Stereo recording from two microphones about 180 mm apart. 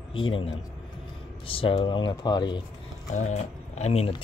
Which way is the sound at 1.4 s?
30° left (ahead or behind).